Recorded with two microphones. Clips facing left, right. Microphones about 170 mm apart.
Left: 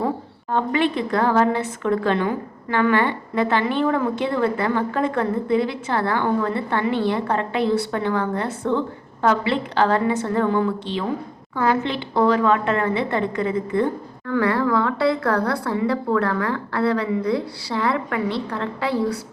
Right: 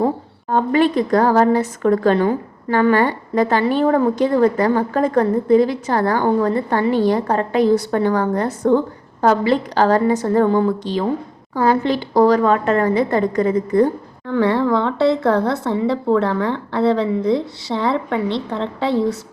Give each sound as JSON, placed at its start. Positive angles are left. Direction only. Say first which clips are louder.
{"t": 0.5, "sound": "a woman's voice", "louder": "right 5 dB", "side_deg": -40}
{"t": 14.3, "sound": "a woman's voice", "louder": "right 3 dB", "side_deg": -25}